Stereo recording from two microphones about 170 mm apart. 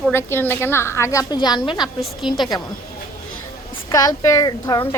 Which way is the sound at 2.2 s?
Centre (ahead or behind).